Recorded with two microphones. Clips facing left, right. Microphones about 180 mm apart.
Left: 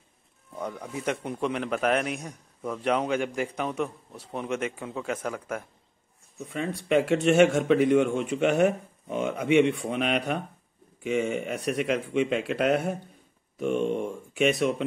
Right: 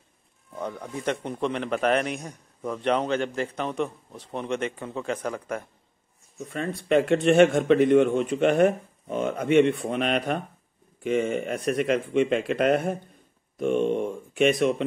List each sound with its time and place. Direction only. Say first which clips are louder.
0.8 s speech: right 1 dB; 5° left (ahead or behind)
6.4 s speech: right 1 dB; 15° left (ahead or behind)